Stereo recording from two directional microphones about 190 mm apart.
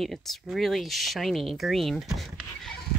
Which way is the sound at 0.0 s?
Centre (ahead or behind).